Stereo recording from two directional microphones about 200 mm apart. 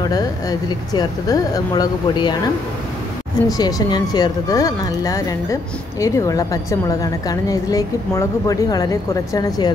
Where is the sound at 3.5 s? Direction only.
20° left (ahead or behind).